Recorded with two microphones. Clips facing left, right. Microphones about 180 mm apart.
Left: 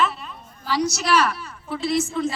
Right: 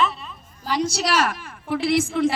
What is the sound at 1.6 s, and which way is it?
Speech, 90° right.